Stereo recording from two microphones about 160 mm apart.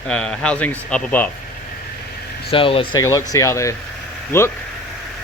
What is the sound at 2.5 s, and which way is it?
Speech, 35° left (ahead or behind).